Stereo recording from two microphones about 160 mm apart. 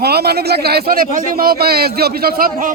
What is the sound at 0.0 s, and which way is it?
A man's voice, 85° right.